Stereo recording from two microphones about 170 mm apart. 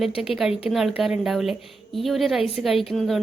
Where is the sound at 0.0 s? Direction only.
Centre (ahead or behind).